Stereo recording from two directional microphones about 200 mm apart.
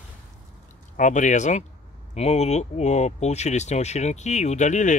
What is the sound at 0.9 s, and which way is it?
Speech, 40° left (ahead or behind).